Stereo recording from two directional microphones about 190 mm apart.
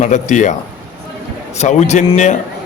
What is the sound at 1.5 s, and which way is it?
Speech, 40° left (ahead or behind).